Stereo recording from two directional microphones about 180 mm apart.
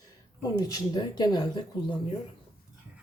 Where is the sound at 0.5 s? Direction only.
20° left (ahead or behind).